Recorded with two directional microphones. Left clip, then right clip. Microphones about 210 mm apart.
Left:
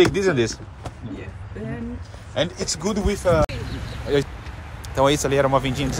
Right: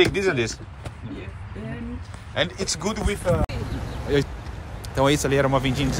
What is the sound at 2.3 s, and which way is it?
Speech, 10° left (ahead or behind).